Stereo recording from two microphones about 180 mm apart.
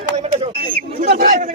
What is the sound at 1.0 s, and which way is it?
Speech, 50° right (ahead or behind).